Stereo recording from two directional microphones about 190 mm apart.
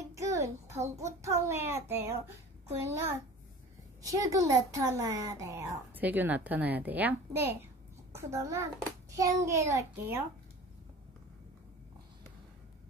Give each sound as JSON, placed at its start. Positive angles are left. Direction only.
{"t": 0.1, "sound": "child singing", "side_deg": -15}
{"t": 0.7, "sound": "a child's voice", "side_deg": -15}